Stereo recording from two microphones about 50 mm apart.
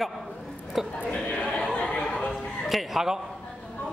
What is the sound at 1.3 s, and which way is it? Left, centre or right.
Chatter, centre.